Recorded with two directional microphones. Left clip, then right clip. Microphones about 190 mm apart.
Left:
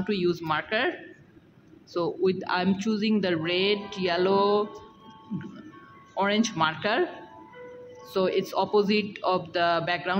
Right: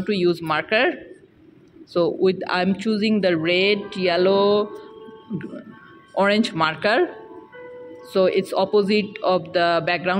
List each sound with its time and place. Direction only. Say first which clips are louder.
0.0 s speech: right 6 dB; 15° right (ahead or behind)
2.0 s speech: right 7 dB; 15° right (ahead or behind)
6.1 s speech: right 6 dB; 20° right (ahead or behind)
8.1 s speech: right 7 dB; 15° right (ahead or behind)